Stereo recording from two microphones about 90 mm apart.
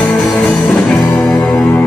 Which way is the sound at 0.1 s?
Centre (ahead or behind).